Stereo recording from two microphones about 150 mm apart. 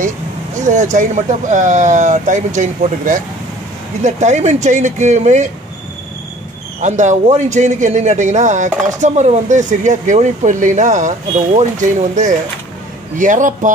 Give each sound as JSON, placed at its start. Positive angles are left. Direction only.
{"t": 0.6, "sound": "a man's voice", "side_deg": -55}
{"t": 6.8, "sound": "a man's voice", "side_deg": -55}